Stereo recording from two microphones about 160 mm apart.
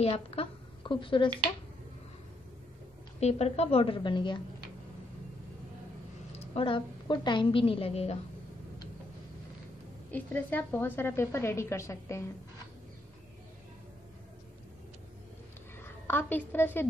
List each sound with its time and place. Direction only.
0.0 s speech: 35° left (ahead or behind)
3.2 s a woman's voice: 40° left (ahead or behind)
6.3 s a woman's voice: 40° left (ahead or behind)
10.1 s a woman's voice: 10° left (ahead or behind)
15.8 s a woman's voice: 10° left (ahead or behind)